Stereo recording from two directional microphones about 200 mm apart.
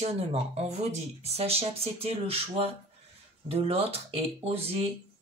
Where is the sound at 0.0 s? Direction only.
30° right (ahead or behind).